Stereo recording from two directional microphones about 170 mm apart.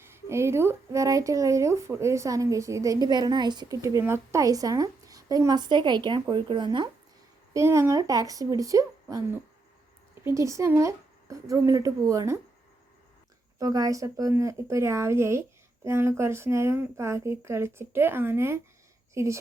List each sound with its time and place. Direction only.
0.0 s speech: 15° right (ahead or behind)
7.5 s speech: 15° right (ahead or behind)
13.6 s a woman's voice: 20° right (ahead or behind)